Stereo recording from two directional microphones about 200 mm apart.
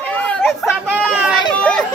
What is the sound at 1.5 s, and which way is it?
Chatter, 5° left (ahead or behind).